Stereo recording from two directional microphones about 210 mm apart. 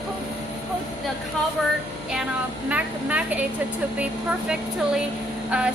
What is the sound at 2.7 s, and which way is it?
A woman's voice, 5° right (ahead or behind).